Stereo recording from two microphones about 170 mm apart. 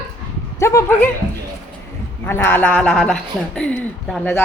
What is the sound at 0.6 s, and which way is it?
Speech, 15° left (ahead or behind).